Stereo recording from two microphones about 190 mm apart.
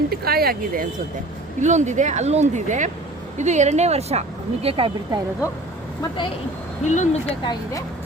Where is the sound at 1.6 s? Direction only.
40° right (ahead or behind).